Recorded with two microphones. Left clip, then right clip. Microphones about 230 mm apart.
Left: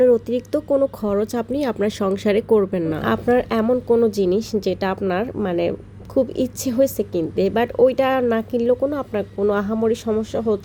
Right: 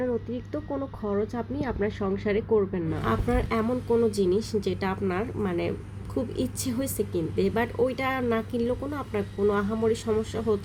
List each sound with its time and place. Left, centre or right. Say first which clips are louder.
0.0 s a woman's voice: left 14 dB; left